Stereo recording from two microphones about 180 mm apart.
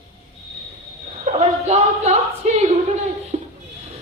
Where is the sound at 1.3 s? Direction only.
35° right (ahead or behind).